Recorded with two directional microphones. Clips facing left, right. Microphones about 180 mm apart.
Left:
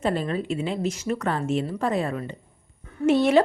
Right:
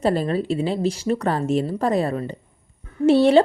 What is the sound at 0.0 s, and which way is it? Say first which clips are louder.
A woman's voice: right 4 dB; 35° right (ahead or behind).